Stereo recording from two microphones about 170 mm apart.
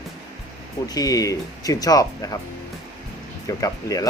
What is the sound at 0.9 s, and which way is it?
Speech, 20° left (ahead or behind).